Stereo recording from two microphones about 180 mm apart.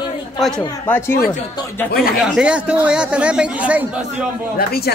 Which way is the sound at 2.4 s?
5° right (ahead or behind).